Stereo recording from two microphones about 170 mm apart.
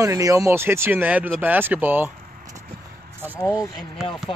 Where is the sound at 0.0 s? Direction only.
20° right (ahead or behind).